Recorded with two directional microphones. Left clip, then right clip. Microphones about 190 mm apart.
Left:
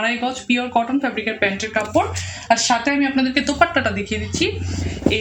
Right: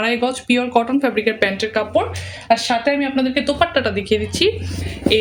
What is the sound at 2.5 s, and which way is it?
A woman's voice, 25° right (ahead or behind).